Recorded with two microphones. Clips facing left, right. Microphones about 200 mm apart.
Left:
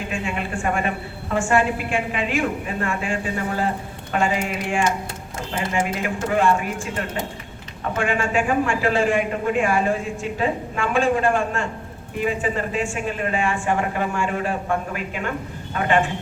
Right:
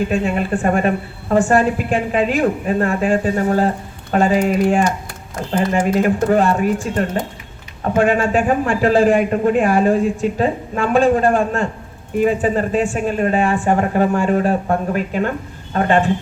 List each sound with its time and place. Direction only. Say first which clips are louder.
0.1 s a man's voice: right 8 dB; 40° right (ahead or behind)